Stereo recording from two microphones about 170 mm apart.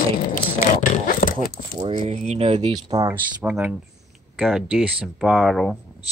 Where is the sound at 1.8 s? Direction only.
35° right (ahead or behind).